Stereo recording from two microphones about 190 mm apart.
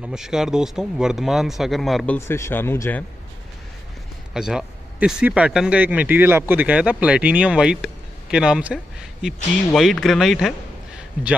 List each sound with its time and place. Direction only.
0.0 s speech: 5° right (ahead or behind)
2.1 s speech: 15° left (ahead or behind)
4.3 s a man's voice: 5° right (ahead or behind)